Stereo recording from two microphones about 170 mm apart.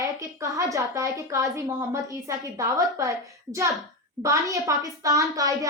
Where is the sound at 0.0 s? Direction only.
20° right (ahead or behind).